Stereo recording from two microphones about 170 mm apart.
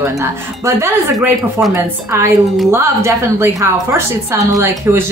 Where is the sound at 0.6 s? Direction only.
15° right (ahead or behind).